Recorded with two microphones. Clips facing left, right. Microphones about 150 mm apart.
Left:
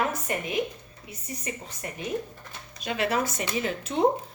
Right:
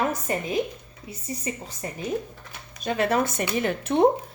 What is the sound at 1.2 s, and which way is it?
Speech, 30° right (ahead or behind).